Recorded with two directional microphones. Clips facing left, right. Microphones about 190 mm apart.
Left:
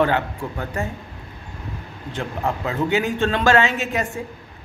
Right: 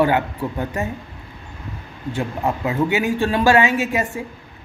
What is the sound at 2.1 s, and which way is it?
Speech, 15° right (ahead or behind).